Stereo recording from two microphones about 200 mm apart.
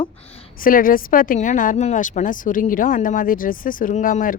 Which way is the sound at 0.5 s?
45° left (ahead or behind).